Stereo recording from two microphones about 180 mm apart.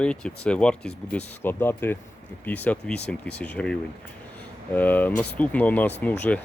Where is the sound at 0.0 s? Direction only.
5° left (ahead or behind).